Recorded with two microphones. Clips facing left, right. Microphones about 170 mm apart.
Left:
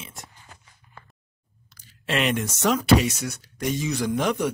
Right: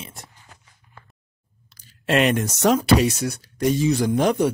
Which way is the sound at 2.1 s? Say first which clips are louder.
Right 5 dB; 45° right (ahead or behind).